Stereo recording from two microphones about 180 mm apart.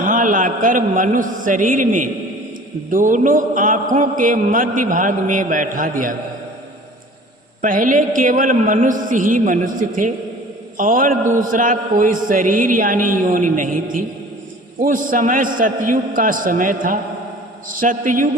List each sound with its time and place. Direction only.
0.0 s a man's voice: 45° right (ahead or behind)
7.6 s a man's voice: 45° right (ahead or behind)